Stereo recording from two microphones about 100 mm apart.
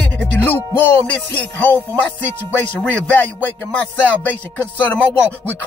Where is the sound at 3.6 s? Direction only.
15° left (ahead or behind).